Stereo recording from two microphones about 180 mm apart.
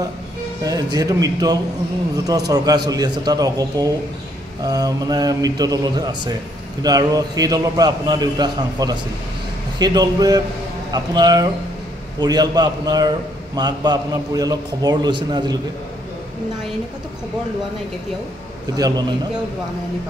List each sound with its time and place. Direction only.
0.6 s a man's voice: 20° right (ahead or behind)
18.8 s a man's voice: 20° right (ahead or behind)